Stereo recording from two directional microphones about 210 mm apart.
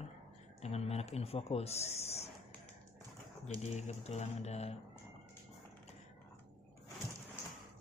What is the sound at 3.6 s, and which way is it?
Speech, 30° left (ahead or behind).